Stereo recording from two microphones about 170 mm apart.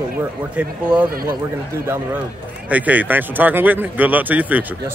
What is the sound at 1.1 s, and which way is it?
Speech, 60° right (ahead or behind).